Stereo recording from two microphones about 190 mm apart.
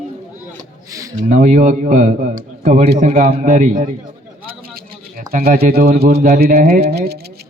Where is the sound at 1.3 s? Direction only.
40° right (ahead or behind).